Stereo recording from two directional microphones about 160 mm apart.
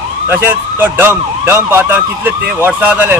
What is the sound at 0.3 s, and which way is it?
Speech, 15° right (ahead or behind).